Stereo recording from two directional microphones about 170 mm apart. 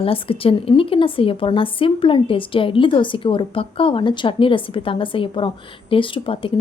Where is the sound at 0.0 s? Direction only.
30° left (ahead or behind).